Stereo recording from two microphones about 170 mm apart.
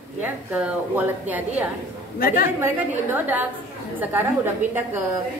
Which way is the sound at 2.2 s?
60° left (ahead or behind).